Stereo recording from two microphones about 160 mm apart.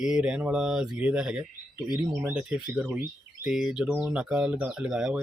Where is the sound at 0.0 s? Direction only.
5° right (ahead or behind).